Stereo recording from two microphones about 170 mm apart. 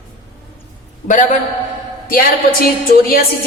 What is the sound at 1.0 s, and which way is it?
Speech, 50° left (ahead or behind).